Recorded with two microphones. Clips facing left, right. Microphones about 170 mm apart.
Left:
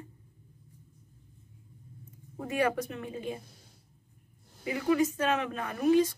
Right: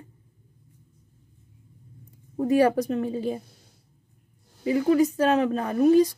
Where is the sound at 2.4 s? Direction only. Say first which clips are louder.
Right 9 dB; 35° right (ahead or behind).